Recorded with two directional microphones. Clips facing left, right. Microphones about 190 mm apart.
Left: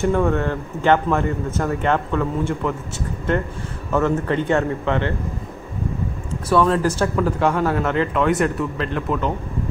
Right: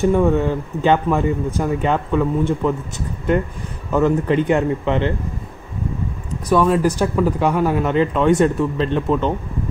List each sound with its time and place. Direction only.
0.0 s a man's voice: 15° right (ahead or behind)
3.9 s a man's voice: 15° right (ahead or behind)
6.5 s a man's voice: 15° right (ahead or behind)